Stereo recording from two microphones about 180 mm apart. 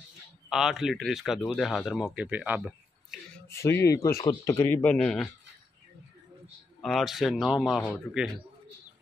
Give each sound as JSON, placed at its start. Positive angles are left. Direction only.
{"t": 0.5, "sound": "speech", "side_deg": 0}
{"t": 3.4, "sound": "speech", "side_deg": 15}
{"t": 6.8, "sound": "speech", "side_deg": 0}